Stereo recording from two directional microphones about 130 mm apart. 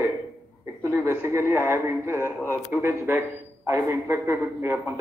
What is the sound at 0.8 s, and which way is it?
A man's voice, 20° right (ahead or behind).